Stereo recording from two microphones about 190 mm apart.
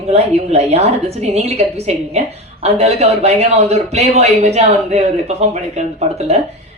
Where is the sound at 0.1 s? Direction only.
35° right (ahead or behind).